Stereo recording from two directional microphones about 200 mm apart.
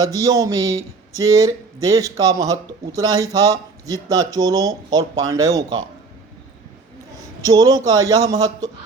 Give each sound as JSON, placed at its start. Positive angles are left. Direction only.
{"t": 0.0, "sound": "speech", "side_deg": -15}
{"t": 7.4, "sound": "speech", "side_deg": -15}